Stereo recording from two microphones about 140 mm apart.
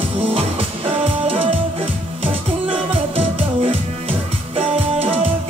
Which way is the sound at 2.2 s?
40° right (ahead or behind).